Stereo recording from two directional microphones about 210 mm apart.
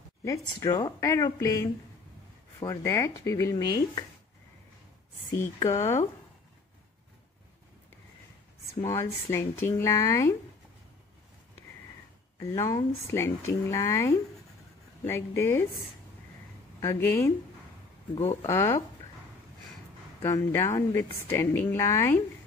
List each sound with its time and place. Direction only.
0.2 s a woman's voice: 15° left (ahead or behind)
5.4 s a woman's voice: 15° left (ahead or behind)
8.8 s a woman's voice: 15° left (ahead or behind)
12.4 s a woman's voice: 15° left (ahead or behind)
16.8 s a woman's voice: 10° left (ahead or behind)
18.1 s speech: 25° left (ahead or behind)
20.2 s a woman's voice: 15° left (ahead or behind)